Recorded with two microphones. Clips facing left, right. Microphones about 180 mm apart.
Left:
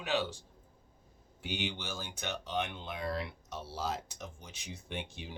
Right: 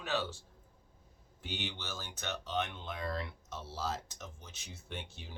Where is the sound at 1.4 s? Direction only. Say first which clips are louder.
Left 4 dB; 10° left (ahead or behind).